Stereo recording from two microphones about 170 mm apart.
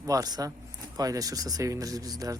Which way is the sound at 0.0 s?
20° right (ahead or behind).